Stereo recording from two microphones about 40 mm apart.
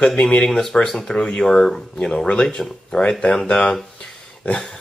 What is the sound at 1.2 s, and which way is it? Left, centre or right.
Speech, left.